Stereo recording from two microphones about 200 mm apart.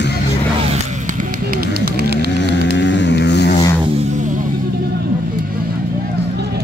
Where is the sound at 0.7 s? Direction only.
45° right (ahead or behind).